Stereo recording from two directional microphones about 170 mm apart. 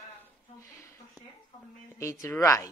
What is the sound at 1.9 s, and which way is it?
Speech, 20° left (ahead or behind).